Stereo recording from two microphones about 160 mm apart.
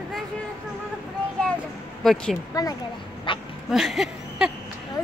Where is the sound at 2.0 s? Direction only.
Centre (ahead or behind).